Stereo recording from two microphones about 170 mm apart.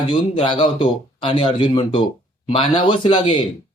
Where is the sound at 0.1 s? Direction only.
30° left (ahead or behind).